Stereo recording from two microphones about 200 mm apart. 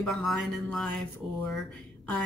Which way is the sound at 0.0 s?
Centre (ahead or behind).